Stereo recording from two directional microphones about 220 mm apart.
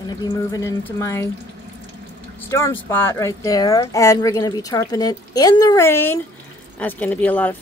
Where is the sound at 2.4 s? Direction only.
10° left (ahead or behind).